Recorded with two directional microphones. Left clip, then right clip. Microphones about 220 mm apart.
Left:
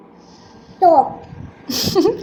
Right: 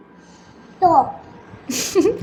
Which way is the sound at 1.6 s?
30° right (ahead or behind).